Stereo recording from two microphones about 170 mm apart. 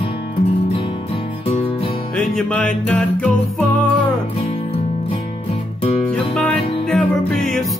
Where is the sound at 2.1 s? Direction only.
5° left (ahead or behind).